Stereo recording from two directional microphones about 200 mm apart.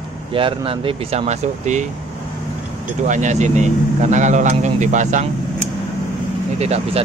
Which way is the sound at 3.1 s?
35° right (ahead or behind).